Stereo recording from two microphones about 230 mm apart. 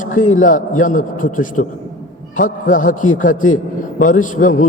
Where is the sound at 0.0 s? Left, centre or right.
Left.